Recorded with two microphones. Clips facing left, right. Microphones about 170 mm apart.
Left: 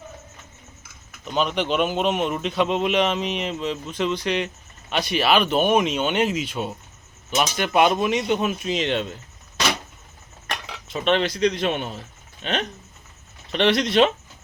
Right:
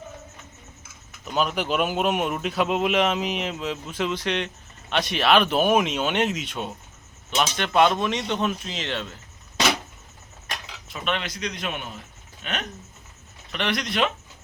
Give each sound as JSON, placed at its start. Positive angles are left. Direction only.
{"t": 1.2, "sound": "speech", "side_deg": -5}
{"t": 10.4, "sound": "cutlery", "side_deg": 65}
{"t": 10.8, "sound": "a man's voice", "side_deg": 30}